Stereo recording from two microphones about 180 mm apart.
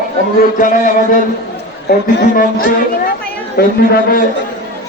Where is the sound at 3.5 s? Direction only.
55° left (ahead or behind).